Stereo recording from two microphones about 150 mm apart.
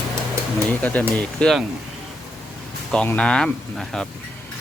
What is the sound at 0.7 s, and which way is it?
Speech, 10° left (ahead or behind).